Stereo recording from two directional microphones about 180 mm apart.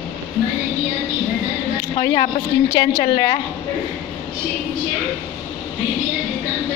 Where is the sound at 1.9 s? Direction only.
25° left (ahead or behind).